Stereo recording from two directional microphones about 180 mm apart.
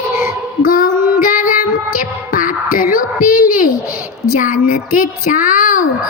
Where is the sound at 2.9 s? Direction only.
50° left (ahead or behind).